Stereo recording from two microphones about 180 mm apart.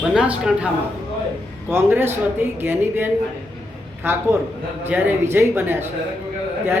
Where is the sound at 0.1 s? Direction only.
5° right (ahead or behind).